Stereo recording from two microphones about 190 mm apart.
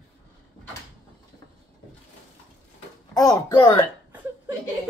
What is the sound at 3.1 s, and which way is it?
Speech, 20° left (ahead or behind).